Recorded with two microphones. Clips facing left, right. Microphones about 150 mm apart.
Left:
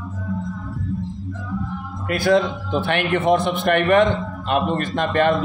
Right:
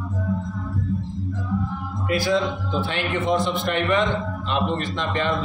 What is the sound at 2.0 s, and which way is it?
A man's voice, 55° left (ahead or behind).